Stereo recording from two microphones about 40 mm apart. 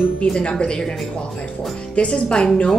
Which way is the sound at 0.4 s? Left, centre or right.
Left.